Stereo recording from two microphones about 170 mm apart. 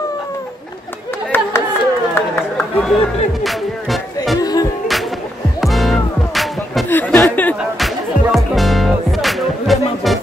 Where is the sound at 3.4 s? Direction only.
Centre (ahead or behind).